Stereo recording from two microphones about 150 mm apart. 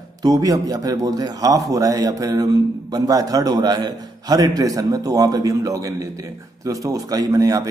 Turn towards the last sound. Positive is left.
turn(degrees=-25)  # may be behind; listen again after turning